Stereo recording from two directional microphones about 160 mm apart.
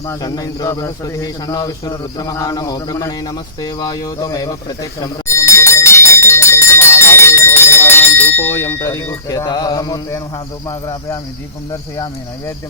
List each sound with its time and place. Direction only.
0.1 s speech: 25° left (ahead or behind)
3.6 s a sound: 25° left (ahead or behind)
10.7 s speech: 20° left (ahead or behind)